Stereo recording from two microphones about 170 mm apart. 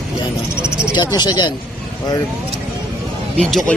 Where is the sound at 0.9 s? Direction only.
25° left (ahead or behind).